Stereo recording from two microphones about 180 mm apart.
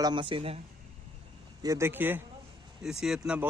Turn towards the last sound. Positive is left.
turn(degrees=-5)  # may be behind; listen again after turning